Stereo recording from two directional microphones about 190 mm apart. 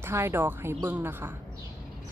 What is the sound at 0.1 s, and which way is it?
A woman's voice, 15° right (ahead or behind).